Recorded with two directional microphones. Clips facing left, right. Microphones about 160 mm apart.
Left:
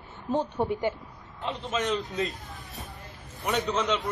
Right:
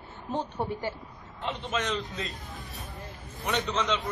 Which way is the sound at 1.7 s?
5° left (ahead or behind).